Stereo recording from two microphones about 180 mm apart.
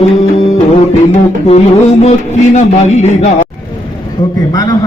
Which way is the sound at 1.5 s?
35° left (ahead or behind).